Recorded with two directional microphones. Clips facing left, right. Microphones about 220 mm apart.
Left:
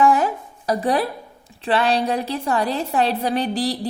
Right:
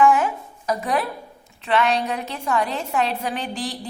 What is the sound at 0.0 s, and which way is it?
A woman's voice, 35° left (ahead or behind).